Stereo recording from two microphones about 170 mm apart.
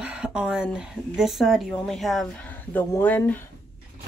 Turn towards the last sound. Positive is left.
turn(degrees=10)  # may be behind; listen again after turning